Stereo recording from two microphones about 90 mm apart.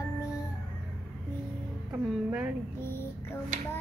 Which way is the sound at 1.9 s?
15° right (ahead or behind).